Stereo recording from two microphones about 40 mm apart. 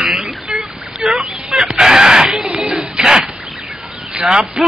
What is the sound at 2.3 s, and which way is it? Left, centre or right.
Music, right.